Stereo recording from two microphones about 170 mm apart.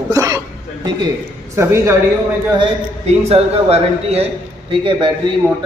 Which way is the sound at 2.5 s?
35° right (ahead or behind).